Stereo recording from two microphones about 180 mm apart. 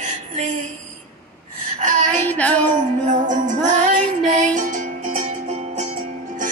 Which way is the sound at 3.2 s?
45° right (ahead or behind).